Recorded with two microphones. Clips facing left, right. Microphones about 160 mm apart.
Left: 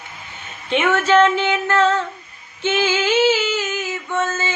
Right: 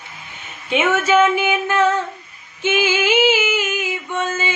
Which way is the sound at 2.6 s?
10° right (ahead or behind).